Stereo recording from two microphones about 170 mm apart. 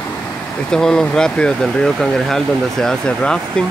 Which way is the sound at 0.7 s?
5° left (ahead or behind).